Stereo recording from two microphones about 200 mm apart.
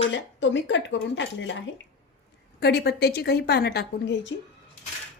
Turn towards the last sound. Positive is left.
turn(degrees=60)  # may be behind; listen again after turning